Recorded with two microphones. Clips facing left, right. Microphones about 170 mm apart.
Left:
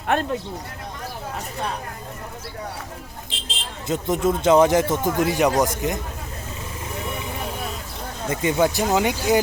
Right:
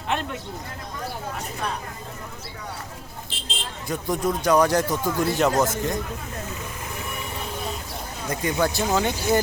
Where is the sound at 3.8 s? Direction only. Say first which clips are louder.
Left 4 dB; 20° left (ahead or behind).